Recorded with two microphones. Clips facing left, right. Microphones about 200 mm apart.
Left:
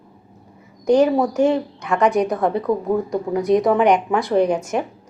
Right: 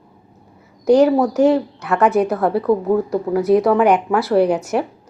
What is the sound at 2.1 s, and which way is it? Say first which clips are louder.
Speech: right 2 dB; 5° right (ahead or behind).